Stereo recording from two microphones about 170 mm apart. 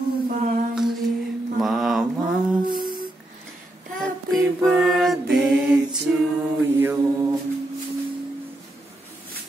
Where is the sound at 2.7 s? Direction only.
55° right (ahead or behind).